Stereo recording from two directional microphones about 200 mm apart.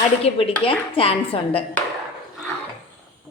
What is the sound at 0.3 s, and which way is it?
A woman's voice, 25° left (ahead or behind).